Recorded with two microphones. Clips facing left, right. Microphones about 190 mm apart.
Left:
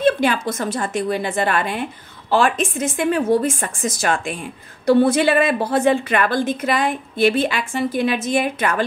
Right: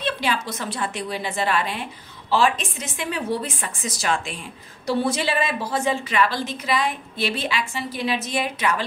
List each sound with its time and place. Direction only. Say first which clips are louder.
0.0 s a woman's voice: left 8 dB; 50° left (ahead or behind)